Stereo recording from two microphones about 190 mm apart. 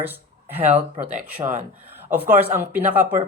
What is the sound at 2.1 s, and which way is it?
A woman's voice, 10° right (ahead or behind).